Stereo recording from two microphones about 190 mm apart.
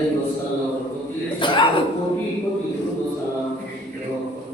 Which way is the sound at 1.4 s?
25° left (ahead or behind).